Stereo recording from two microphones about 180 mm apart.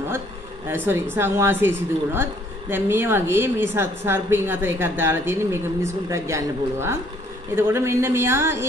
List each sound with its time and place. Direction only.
0.7 s a woman's voice: 10° right (ahead or behind)